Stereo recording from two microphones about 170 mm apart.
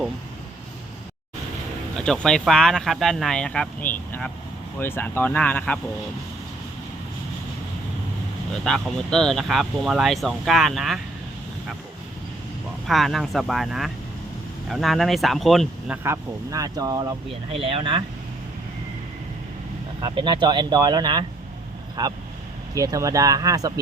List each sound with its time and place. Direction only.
2.0 s speech: 5° left (ahead or behind)
8.6 s speech: 5° left (ahead or behind)
12.9 s speech: centre (ahead or behind)
16.0 s speech: 20° right (ahead or behind)
17.5 s speech: 35° right (ahead or behind)
20.0 s speech: 25° right (ahead or behind)